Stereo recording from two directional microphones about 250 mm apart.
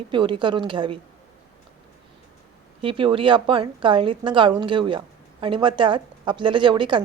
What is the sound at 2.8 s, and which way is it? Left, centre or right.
A woman's voice, right.